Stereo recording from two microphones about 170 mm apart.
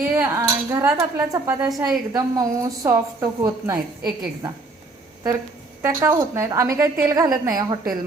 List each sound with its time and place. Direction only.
0.0 s speech: 20° right (ahead or behind)
5.8 s a woman's voice: 15° right (ahead or behind)